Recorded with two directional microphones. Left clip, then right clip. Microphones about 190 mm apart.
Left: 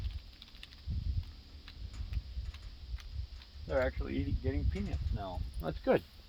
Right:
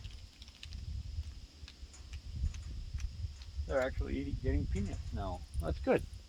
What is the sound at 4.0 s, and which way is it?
Speech, 15° left (ahead or behind).